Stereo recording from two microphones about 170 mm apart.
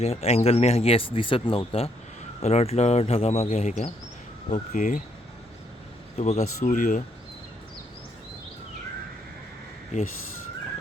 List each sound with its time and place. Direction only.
0.0 s speech: 35° left (ahead or behind)
6.1 s speech: 40° left (ahead or behind)